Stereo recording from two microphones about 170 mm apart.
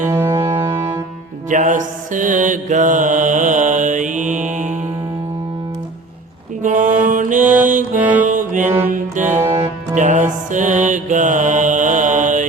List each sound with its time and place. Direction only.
0.0 s music: 15° right (ahead or behind)
0.3 s music: 30° right (ahead or behind)
1.5 s mantra: 50° right (ahead or behind)
6.6 s music: 50° right (ahead or behind)
7.9 s music: 10° right (ahead or behind)
8.3 s music: 50° right (ahead or behind)
9.2 s music: 15° right (ahead or behind)
9.9 s music: 45° right (ahead or behind)